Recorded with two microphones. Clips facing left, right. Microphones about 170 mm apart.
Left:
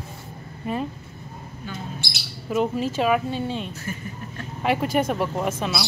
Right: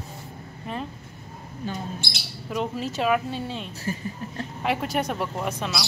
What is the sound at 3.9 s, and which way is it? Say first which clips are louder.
Speech: right 7 dB; 30° right (ahead or behind).